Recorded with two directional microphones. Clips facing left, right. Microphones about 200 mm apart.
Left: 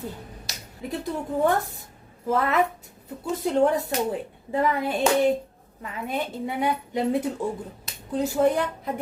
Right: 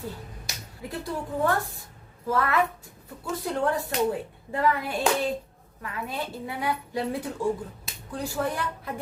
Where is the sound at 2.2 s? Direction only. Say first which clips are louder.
Left 2 dB; 20° left (ahead or behind).